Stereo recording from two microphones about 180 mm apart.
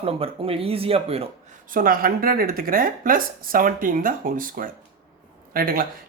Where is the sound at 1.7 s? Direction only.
50° right (ahead or behind).